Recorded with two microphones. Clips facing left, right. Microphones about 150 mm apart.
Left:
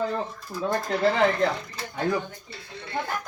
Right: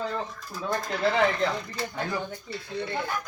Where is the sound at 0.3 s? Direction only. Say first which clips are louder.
Left 3 dB; 30° left (ahead or behind).